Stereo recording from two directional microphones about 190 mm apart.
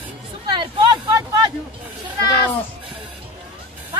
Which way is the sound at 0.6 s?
20° right (ahead or behind).